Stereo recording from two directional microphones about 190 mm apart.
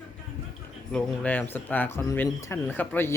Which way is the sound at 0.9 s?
10° left (ahead or behind).